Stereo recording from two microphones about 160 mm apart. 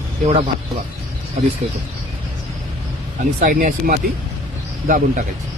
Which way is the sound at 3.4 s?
55° right (ahead or behind).